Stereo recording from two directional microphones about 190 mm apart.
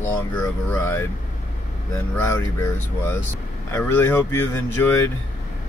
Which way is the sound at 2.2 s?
10° left (ahead or behind).